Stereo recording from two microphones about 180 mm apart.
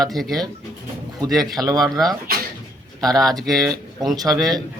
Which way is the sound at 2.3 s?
55° right (ahead or behind).